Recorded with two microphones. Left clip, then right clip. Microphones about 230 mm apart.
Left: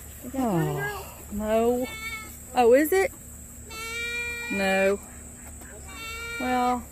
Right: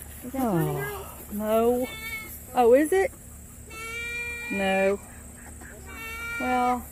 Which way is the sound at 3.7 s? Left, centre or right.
Left.